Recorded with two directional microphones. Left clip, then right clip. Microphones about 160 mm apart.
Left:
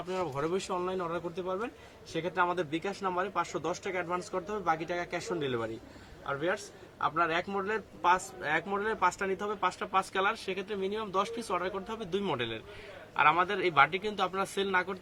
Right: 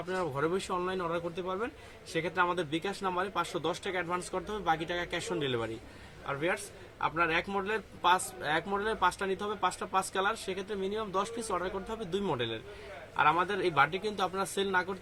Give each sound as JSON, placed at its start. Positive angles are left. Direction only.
{"t": 0.1, "sound": "speech", "side_deg": 0}
{"t": 8.8, "sound": "speech", "side_deg": 25}
{"t": 10.2, "sound": "speech", "side_deg": -10}
{"t": 11.6, "sound": "speech", "side_deg": 20}
{"t": 12.1, "sound": "speech", "side_deg": -10}